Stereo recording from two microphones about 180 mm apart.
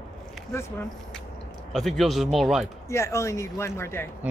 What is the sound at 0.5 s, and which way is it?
Speech, 15° left (ahead or behind).